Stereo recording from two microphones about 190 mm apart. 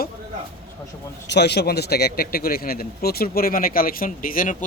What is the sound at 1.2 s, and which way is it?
A man's voice, 60° left (ahead or behind).